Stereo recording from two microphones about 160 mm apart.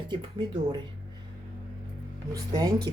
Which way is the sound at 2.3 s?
25° right (ahead or behind).